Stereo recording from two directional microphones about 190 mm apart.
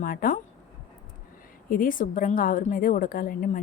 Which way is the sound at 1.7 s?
45° left (ahead or behind).